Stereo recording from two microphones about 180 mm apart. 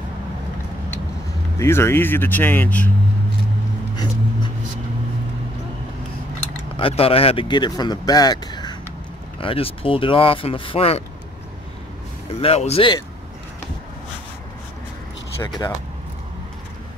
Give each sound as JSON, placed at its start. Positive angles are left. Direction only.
{"t": 1.6, "sound": "speech", "side_deg": 15}
{"t": 3.9, "sound": "a sound", "side_deg": 20}
{"t": 6.8, "sound": "speech", "side_deg": 30}
{"t": 12.4, "sound": "speech", "side_deg": 35}
{"t": 15.4, "sound": "speech", "side_deg": 25}